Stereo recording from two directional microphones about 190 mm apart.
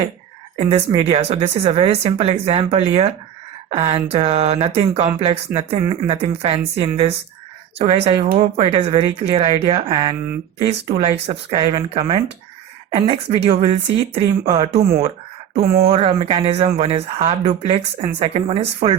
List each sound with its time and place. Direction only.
0.5 s speech: 30° right (ahead or behind)
15.6 s speech: 55° right (ahead or behind)
15.9 s speech: 30° right (ahead or behind)